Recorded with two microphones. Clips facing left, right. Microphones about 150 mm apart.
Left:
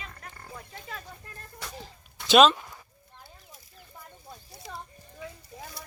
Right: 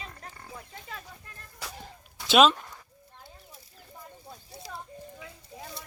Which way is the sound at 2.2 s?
5° right (ahead or behind).